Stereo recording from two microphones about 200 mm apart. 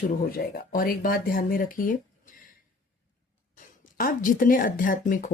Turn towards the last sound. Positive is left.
turn(degrees=40)  # may be behind; listen again after turning